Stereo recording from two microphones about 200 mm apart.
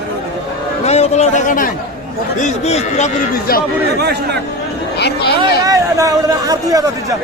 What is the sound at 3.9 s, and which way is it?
Speech, 55° right (ahead or behind).